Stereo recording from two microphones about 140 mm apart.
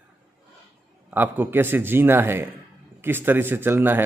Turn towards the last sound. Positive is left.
turn(degrees=-15)  # may be behind; listen again after turning